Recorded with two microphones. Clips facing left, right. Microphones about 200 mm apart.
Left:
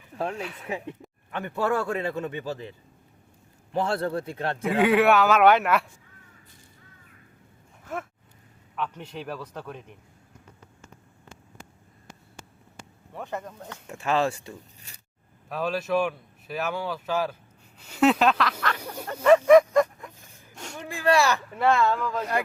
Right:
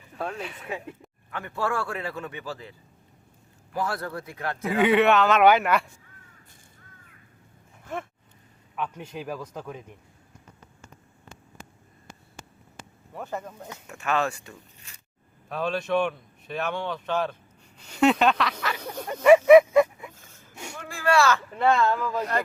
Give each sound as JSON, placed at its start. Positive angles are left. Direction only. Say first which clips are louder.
{"t": 1.3, "sound": "a man's voice", "louder": "left 3 dB", "side_deg": 20}
{"t": 4.7, "sound": "speech", "louder": "even", "side_deg": 0}
{"t": 8.7, "sound": "speech", "louder": "even", "side_deg": -10}
{"t": 13.1, "sound": "speech", "louder": "even", "side_deg": -5}
{"t": 14.0, "sound": "speech", "louder": "left 2 dB", "side_deg": 30}
{"t": 15.4, "sound": "speech", "louder": "even", "side_deg": 0}
{"t": 19.2, "sound": "a sound", "louder": "right 2 dB", "side_deg": -10}
{"t": 20.1, "sound": "a sound", "louder": "right 1 dB", "side_deg": 15}
{"t": 21.5, "sound": "speech", "louder": "even", "side_deg": 5}